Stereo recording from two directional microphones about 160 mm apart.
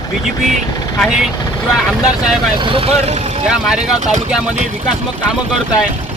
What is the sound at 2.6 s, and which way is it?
Speech, 35° right (ahead or behind).